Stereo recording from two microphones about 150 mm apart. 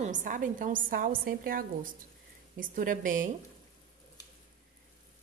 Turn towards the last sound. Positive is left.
turn(degrees=-65)  # may be behind; listen again after turning